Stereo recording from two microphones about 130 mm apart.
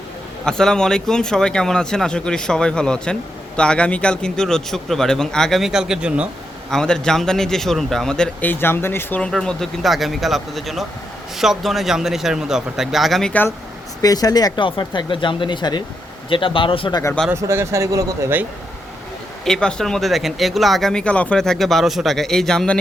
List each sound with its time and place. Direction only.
0.4 s speech: 5° left (ahead or behind)
6.7 s speech: 5° left (ahead or behind)
9.3 s speech: 5° left (ahead or behind)
14.0 s speech: 30° left (ahead or behind)
17.3 s speech: 20° right (ahead or behind)
19.5 s speech: 5° left (ahead or behind)